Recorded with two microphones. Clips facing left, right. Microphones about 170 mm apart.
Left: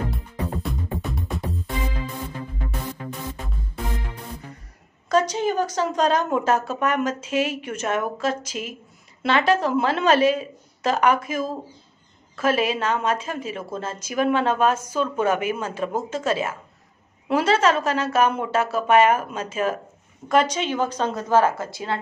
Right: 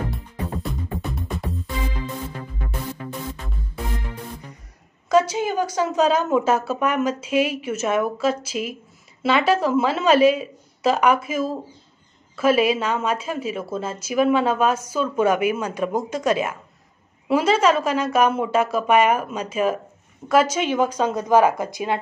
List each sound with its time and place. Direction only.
0.1 s music: centre (ahead or behind)
5.1 s a woman's voice: 10° right (ahead or behind)